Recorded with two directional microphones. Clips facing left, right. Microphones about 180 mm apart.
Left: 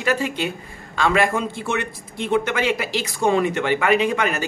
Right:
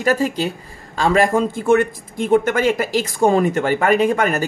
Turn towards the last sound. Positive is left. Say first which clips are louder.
# right 4 dB
turn(degrees=-45)  # may be behind; listen again after turning